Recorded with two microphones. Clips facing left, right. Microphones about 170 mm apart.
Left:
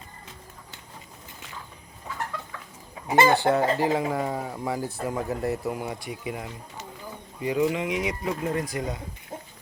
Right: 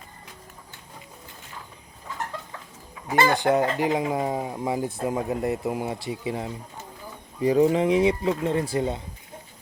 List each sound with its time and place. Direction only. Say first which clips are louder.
3.1 s speech: left 2 dB; 20° left (ahead or behind)
3.3 s speech: even; 15° right (ahead or behind)